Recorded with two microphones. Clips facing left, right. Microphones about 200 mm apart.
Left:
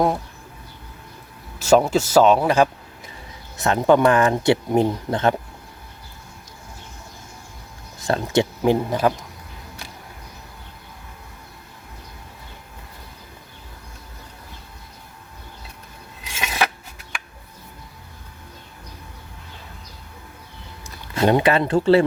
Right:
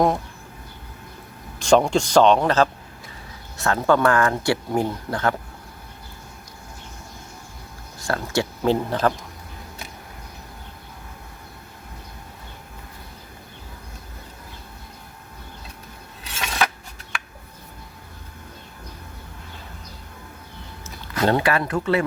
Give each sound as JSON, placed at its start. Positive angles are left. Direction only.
{"t": 1.5, "sound": "a man's voice", "side_deg": 5}
{"t": 3.6, "sound": "speech", "side_deg": 20}
{"t": 7.9, "sound": "speech", "side_deg": 20}
{"t": 16.2, "sound": "scissors", "side_deg": 10}
{"t": 21.2, "sound": "speech", "side_deg": 20}